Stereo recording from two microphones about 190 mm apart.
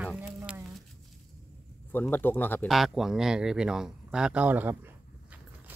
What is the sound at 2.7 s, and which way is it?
Speech, centre (ahead or behind).